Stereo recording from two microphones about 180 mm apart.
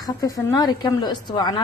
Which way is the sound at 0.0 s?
20° left (ahead or behind).